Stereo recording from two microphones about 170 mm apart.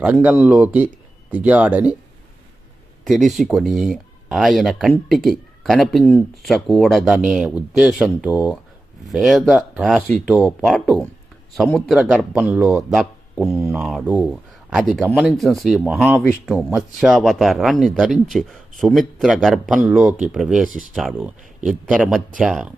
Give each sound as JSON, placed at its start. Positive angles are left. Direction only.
{"t": 0.0, "sound": "speech", "side_deg": -10}
{"t": 3.0, "sound": "speech", "side_deg": 0}